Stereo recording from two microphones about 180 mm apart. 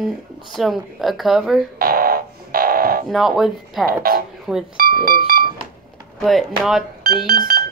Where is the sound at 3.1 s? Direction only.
Centre (ahead or behind).